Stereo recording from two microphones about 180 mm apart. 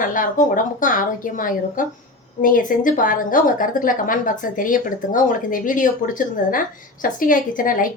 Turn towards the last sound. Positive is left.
turn(degrees=50)  # may be behind; listen again after turning